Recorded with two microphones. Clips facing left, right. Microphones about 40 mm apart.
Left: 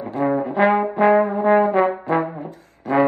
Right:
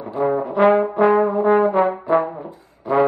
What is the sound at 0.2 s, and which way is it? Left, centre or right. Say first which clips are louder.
Trombone: right 2 dB; left.